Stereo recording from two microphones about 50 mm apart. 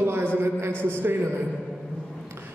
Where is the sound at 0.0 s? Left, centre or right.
Right.